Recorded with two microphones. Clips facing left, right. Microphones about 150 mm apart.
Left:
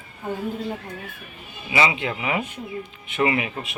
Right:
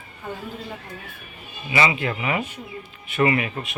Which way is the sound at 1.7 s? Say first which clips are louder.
Even; 20° left (ahead or behind).